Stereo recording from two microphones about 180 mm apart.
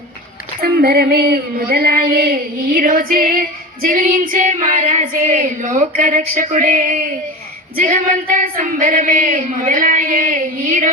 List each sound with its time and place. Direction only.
0.6 s female singing: 60° right (ahead or behind)